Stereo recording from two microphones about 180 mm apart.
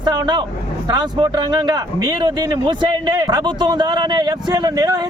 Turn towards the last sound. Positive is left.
turn(degrees=-25)  # may be behind; listen again after turning